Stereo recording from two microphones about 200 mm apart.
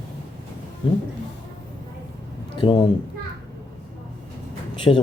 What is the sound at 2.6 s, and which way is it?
Speech, 25° left (ahead or behind).